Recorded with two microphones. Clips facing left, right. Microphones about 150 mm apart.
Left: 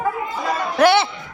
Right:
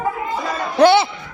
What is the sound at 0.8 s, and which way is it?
Music, 25° right (ahead or behind).